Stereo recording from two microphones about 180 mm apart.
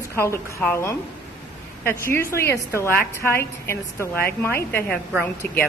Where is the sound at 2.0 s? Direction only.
15° left (ahead or behind).